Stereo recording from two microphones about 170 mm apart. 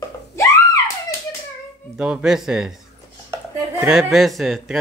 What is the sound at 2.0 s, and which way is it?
Speech, 5° right (ahead or behind).